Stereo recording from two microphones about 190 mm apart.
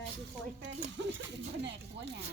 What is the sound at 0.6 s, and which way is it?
Speech, 70° right (ahead or behind).